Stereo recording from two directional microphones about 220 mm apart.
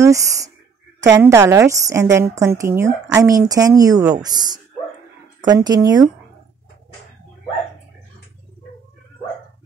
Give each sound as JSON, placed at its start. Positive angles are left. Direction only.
{"t": 0.0, "sound": "a woman's voice", "side_deg": -15}